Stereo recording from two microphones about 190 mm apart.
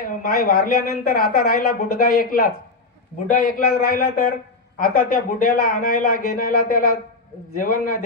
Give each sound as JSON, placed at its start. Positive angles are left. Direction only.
{"t": 0.0, "sound": "a woman's voice", "side_deg": 50}